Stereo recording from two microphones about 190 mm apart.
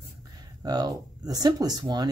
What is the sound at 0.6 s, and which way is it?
Speech, 20° right (ahead or behind).